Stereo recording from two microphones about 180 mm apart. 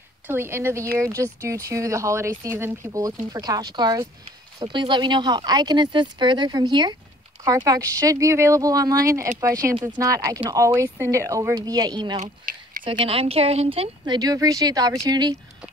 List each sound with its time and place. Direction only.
0.3 s speech: 15° right (ahead or behind)
12.2 s speech: 50° right (ahead or behind)
12.8 s speech: 30° right (ahead or behind)